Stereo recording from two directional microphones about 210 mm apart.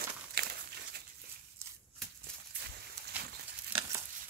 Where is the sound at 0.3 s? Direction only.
50° right (ahead or behind).